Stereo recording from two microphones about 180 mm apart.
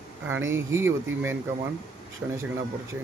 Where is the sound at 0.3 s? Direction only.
15° right (ahead or behind).